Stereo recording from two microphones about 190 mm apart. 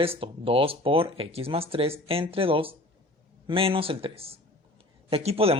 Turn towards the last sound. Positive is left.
turn(degrees=-30)  # may be behind; listen again after turning